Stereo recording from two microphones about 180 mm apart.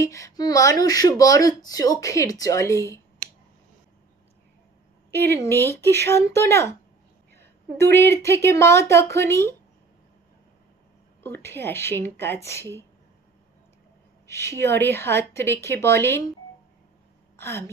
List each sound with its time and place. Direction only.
0.0 s speech: 20° left (ahead or behind)
5.6 s a woman's voice: 15° left (ahead or behind)
7.8 s speech: 65° right (ahead or behind)
8.1 s a woman's voice: 15° left (ahead or behind)
11.2 s a woman's voice: 15° left (ahead or behind)
14.2 s a woman's voice: 15° left (ahead or behind)
17.4 s a woman's voice: 15° left (ahead or behind)